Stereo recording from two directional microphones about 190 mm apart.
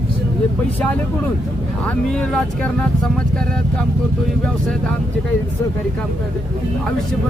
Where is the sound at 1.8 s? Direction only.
5° left (ahead or behind).